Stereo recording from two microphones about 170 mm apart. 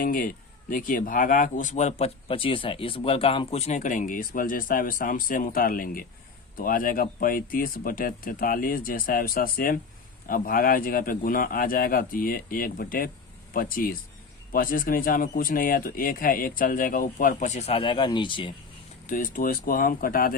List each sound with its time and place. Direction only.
0.0 s speech: 55° left (ahead or behind); by 18.5 s 30° left (ahead or behind)
19.0 s speech: 55° left (ahead or behind)